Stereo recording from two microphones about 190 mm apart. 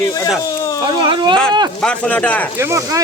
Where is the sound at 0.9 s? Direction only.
25° right (ahead or behind).